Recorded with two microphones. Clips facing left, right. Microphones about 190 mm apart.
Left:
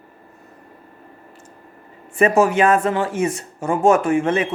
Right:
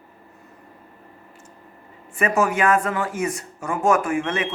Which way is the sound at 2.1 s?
25° left (ahead or behind).